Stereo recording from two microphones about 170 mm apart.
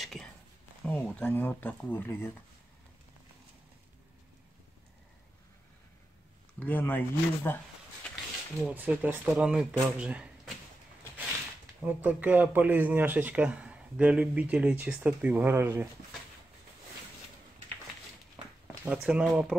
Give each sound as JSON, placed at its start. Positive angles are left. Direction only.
{"t": 0.0, "sound": "a sound", "side_deg": 0}
{"t": 0.8, "sound": "speech", "side_deg": 10}
{"t": 6.6, "sound": "speech", "side_deg": 10}
{"t": 8.6, "sound": "speech", "side_deg": -10}
{"t": 11.8, "sound": "speech", "side_deg": -10}
{"t": 18.9, "sound": "speech", "side_deg": -5}